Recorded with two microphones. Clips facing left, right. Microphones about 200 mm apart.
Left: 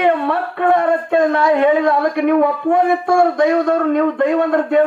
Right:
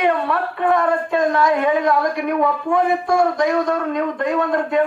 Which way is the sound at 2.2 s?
55° left (ahead or behind).